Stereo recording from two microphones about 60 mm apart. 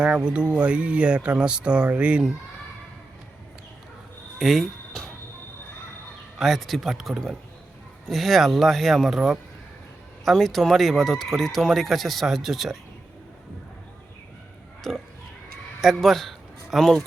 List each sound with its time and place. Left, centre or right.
0.2 s speech: centre
4.4 s music: centre
6.4 s speech: centre
10.2 s speech: centre
14.8 s speech: centre